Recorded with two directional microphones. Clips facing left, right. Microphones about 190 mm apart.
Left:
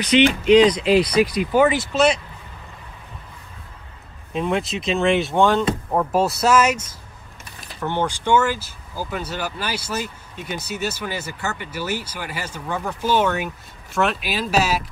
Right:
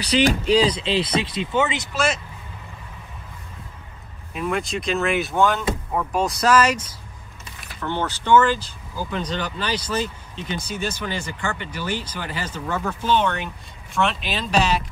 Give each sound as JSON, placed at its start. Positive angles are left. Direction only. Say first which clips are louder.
{"t": 0.0, "sound": "speech", "louder": "left 3 dB", "side_deg": -35}
{"t": 4.3, "sound": "speech", "louder": "left 2 dB", "side_deg": -5}
{"t": 7.8, "sound": "speech", "louder": "left 3 dB", "side_deg": 15}